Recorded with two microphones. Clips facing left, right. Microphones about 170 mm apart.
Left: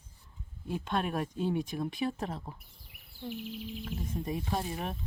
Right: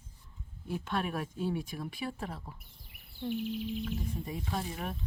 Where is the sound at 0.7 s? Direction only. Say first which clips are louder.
Left 2 dB; 15° left (ahead or behind).